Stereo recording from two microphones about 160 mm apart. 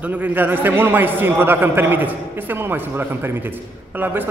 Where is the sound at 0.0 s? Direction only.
10° right (ahead or behind).